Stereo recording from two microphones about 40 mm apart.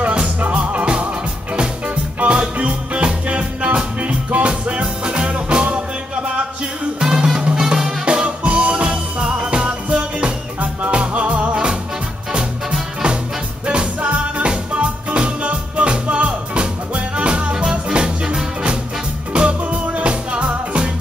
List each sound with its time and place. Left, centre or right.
0.0 s music: right
2.1 s music: right
7.0 s music: centre
8.5 s music: right
12.3 s music: right